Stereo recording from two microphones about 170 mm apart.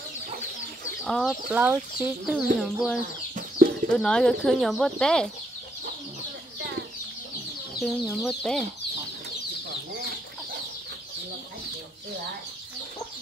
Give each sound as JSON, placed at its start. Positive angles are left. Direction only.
{"t": 1.0, "sound": "speech", "side_deg": 0}
{"t": 7.8, "sound": "speech", "side_deg": 0}
{"t": 9.7, "sound": "chicken", "side_deg": -75}